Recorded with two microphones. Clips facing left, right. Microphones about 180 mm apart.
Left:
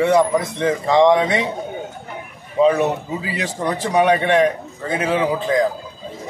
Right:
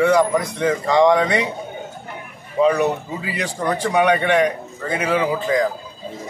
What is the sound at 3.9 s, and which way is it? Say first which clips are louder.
Speech: left 1 dB; 30° left (ahead or behind).